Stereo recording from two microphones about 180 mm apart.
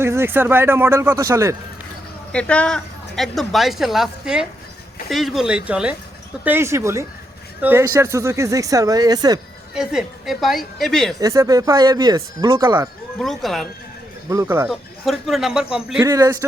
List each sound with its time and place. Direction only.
0.0 s speech: 15° right (ahead or behind)
2.3 s a woman's voice: 5° left (ahead or behind); by 9.4 s 20° right (ahead or behind)
9.7 s a woman's voice: 5° right (ahead or behind)
11.2 s speech: 20° right (ahead or behind)
13.1 s a woman's voice: centre (ahead or behind)
14.3 s speech: 15° right (ahead or behind)
14.7 s a woman's voice: centre (ahead or behind)
16.0 s speech: 20° right (ahead or behind)